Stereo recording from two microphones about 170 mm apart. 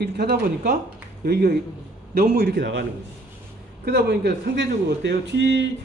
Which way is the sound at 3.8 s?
70° right (ahead or behind).